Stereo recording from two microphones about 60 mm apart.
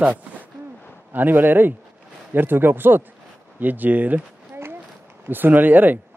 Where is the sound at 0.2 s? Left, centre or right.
Right.